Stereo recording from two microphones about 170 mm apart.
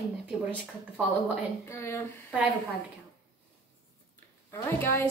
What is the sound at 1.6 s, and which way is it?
Speech, 15° left (ahead or behind).